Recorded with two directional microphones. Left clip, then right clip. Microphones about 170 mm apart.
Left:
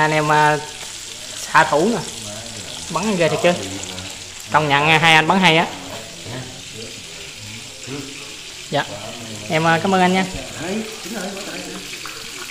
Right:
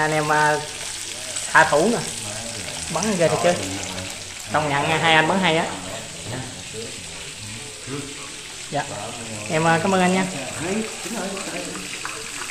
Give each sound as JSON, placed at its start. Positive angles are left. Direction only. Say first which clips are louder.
{"t": 0.0, "sound": "speech", "louder": "left 4 dB", "side_deg": 35}
{"t": 1.5, "sound": "frying", "louder": "left 1 dB", "side_deg": 30}
{"t": 2.9, "sound": "speech", "louder": "left 2 dB", "side_deg": 30}
{"t": 4.5, "sound": "speech", "louder": "left 6 dB", "side_deg": 40}
{"t": 8.7, "sound": "speech", "louder": "left 5 dB", "side_deg": 40}
{"t": 9.5, "sound": "speech", "louder": "left 3 dB", "side_deg": 25}